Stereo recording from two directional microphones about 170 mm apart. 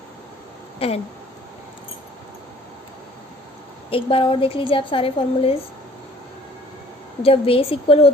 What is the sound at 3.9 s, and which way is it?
A woman's voice, 30° left (ahead or behind).